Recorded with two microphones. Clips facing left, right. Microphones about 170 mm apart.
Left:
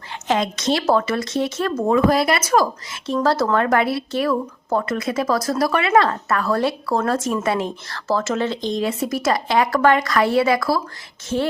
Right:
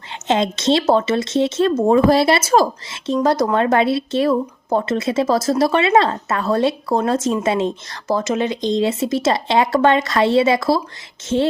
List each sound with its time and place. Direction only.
0.1 s speech: 25° right (ahead or behind)